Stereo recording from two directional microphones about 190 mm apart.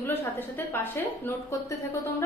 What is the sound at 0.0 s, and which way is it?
A woman's voice, 10° left (ahead or behind).